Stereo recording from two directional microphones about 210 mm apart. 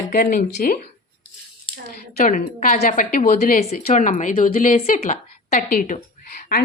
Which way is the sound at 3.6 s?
30° left (ahead or behind).